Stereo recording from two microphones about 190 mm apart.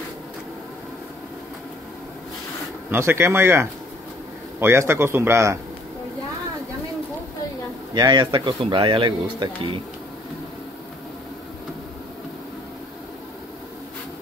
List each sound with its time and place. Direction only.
2.9 s a man's voice: 15° right (ahead or behind)
7.9 s speech: 25° right (ahead or behind)